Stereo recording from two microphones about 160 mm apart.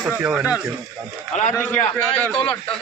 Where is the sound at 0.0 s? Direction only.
10° right (ahead or behind).